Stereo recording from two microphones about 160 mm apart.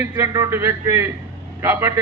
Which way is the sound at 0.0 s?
20° right (ahead or behind).